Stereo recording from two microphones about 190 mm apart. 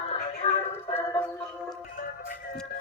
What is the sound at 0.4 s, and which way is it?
Music, 35° left (ahead or behind).